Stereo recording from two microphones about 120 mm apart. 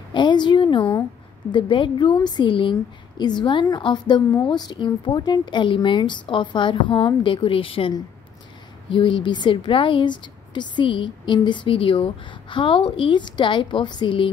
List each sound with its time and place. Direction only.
0.1 s a woman's voice: 40° left (ahead or behind)
8.9 s speech: 40° left (ahead or behind)